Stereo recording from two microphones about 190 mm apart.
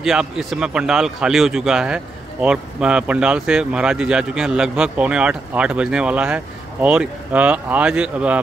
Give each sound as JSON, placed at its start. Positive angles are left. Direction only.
{"t": 0.0, "sound": "speech", "side_deg": 0}